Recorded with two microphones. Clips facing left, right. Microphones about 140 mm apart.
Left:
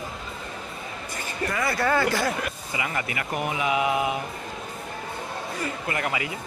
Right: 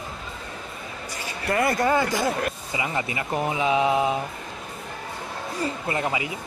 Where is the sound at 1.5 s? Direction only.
50° right (ahead or behind).